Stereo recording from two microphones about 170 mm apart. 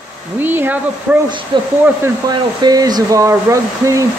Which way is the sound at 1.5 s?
30° right (ahead or behind).